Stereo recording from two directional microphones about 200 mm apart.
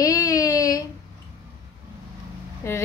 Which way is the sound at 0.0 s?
15° left (ahead or behind).